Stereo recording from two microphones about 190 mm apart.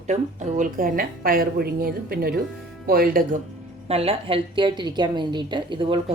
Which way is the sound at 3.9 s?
30° right (ahead or behind).